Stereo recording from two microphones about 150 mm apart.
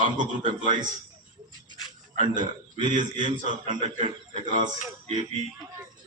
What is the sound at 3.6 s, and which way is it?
A man's voice, 55° right (ahead or behind).